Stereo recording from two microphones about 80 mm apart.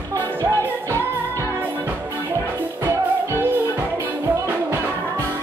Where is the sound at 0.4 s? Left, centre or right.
Right.